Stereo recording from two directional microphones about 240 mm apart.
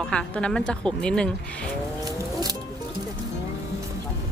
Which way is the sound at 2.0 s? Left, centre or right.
Centre.